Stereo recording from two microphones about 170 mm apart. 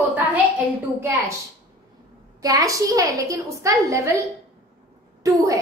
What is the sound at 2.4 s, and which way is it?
A woman's voice, 20° right (ahead or behind).